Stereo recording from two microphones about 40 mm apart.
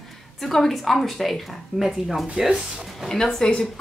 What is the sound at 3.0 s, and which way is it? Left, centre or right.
Speech, centre.